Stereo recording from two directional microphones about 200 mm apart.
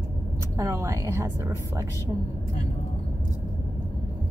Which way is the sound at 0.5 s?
15° right (ahead or behind).